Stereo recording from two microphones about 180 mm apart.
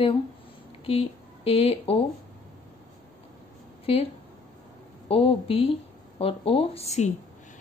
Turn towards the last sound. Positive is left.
turn(degrees=35)  # may be behind; listen again after turning